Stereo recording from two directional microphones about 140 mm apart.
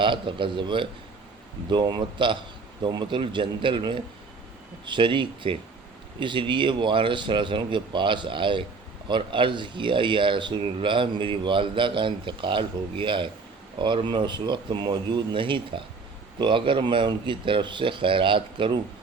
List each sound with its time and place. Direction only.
0.0 s speech: 35° right (ahead or behind)